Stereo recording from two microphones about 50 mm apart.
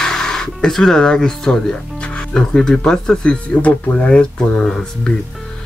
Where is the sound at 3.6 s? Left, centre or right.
Left.